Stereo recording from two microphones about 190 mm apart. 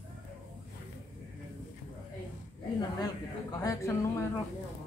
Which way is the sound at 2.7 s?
20° left (ahead or behind).